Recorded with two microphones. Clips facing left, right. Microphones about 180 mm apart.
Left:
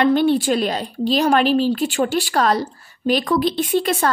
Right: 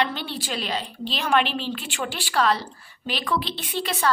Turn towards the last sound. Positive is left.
turn(degrees=45)  # may be behind; listen again after turning